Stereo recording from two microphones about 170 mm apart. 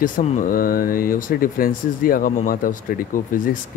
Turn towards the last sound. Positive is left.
turn(degrees=50)  # may be behind; listen again after turning